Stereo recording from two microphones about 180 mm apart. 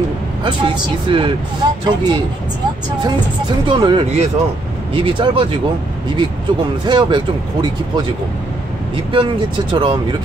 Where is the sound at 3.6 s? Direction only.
25° right (ahead or behind).